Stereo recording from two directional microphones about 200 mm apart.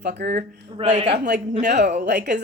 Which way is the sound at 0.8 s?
30° right (ahead or behind).